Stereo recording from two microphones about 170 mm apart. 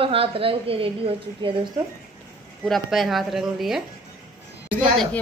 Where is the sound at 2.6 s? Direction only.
Centre (ahead or behind).